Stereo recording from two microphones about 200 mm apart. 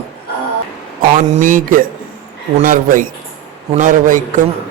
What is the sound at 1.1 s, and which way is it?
A man's voice, 40° right (ahead or behind).